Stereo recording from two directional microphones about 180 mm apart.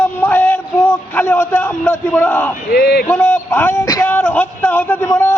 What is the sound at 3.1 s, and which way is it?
A man's voice, 10° left (ahead or behind).